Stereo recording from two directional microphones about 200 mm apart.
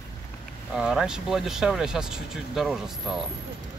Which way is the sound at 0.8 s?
5° right (ahead or behind).